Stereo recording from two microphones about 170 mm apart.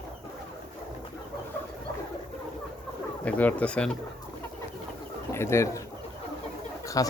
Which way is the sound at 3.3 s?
10° left (ahead or behind).